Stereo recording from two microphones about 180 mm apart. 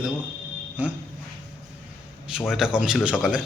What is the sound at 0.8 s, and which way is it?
Speech, 5° right (ahead or behind).